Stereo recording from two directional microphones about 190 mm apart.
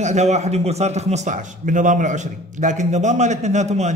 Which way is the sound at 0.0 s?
35° right (ahead or behind).